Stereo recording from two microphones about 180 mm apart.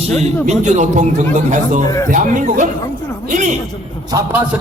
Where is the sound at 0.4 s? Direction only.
40° right (ahead or behind).